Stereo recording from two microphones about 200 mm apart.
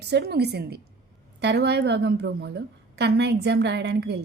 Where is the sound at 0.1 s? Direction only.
55° right (ahead or behind).